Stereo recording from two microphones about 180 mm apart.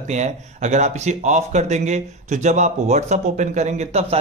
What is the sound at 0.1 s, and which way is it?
Speech, 40° right (ahead or behind).